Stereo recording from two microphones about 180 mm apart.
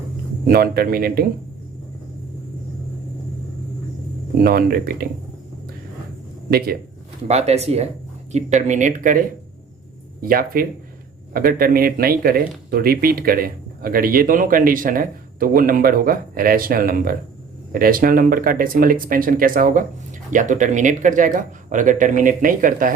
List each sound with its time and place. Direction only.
0.4 s a man's voice: 55° right (ahead or behind)
4.4 s a man's voice: 55° right (ahead or behind)
7.3 s speech: 35° right (ahead or behind)